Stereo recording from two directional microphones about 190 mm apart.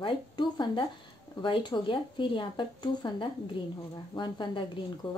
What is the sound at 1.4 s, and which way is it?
A woman's voice, 25° left (ahead or behind).